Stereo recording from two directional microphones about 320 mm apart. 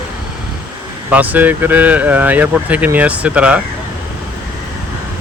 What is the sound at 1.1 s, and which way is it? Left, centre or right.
Speech, centre.